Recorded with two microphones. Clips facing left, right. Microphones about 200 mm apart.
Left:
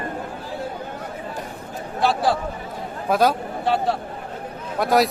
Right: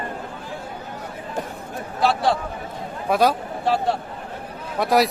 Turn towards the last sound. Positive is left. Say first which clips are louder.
# even
turn(degrees=0)  # may be behind; listen again after turning